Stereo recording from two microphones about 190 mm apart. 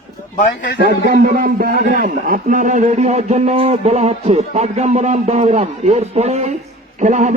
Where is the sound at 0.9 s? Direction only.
60° right (ahead or behind).